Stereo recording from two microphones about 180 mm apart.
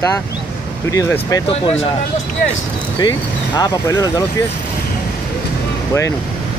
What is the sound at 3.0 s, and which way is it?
Speech, 20° left (ahead or behind).